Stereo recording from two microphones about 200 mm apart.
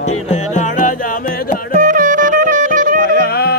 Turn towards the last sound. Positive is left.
turn(degrees=55)  # may be behind; listen again after turning